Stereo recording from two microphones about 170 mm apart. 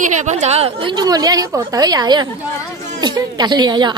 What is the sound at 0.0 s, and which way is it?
A woman's voice, 45° right (ahead or behind).